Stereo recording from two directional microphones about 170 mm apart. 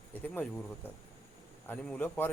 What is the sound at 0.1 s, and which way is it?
Speech, 10° left (ahead or behind).